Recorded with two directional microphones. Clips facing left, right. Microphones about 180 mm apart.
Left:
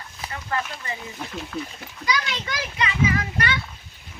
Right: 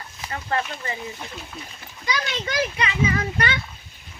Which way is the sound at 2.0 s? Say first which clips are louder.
Left 1 dB; 25° right (ahead or behind).